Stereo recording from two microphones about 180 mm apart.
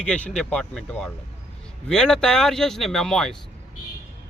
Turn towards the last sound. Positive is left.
turn(degrees=5)  # may be behind; listen again after turning